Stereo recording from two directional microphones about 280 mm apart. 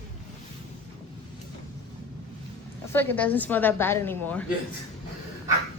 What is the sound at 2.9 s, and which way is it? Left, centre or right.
A woman's voice, centre.